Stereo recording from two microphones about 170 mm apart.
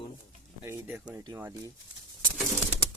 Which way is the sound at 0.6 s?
15° right (ahead or behind).